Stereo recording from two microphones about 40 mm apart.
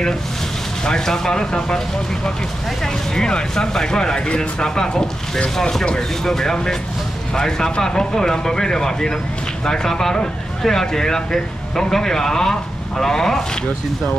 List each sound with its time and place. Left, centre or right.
0.8 s speech: centre
2.8 s speech: centre